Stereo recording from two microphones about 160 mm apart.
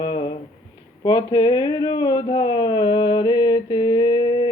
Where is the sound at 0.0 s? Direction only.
30° left (ahead or behind).